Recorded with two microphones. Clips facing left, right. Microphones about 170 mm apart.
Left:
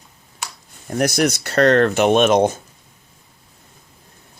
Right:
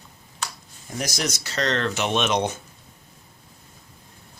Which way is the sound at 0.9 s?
60° left (ahead or behind).